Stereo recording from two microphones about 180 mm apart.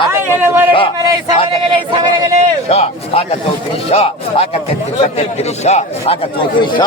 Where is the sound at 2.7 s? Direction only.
35° left (ahead or behind).